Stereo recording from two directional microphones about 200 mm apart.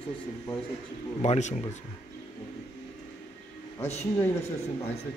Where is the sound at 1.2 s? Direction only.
35° left (ahead or behind).